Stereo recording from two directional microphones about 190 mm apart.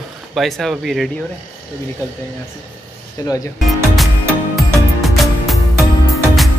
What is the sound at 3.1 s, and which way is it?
Speech, 20° left (ahead or behind).